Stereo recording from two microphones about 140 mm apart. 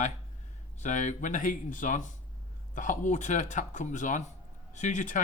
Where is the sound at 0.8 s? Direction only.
60° left (ahead or behind).